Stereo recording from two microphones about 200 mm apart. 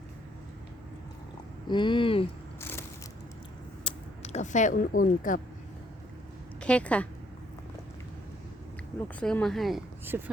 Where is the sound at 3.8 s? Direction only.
30° left (ahead or behind).